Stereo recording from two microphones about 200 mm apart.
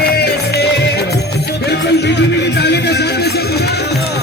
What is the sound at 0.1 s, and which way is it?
Music, 55° left (ahead or behind).